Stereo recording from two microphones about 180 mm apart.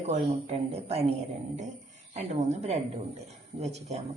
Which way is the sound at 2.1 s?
40° right (ahead or behind).